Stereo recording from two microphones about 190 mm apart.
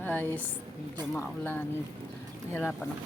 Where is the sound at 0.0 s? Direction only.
10° left (ahead or behind).